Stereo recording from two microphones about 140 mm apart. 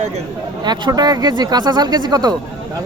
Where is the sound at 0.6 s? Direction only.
30° right (ahead or behind).